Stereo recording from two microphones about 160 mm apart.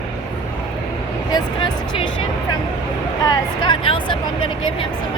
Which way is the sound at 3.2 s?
30° left (ahead or behind).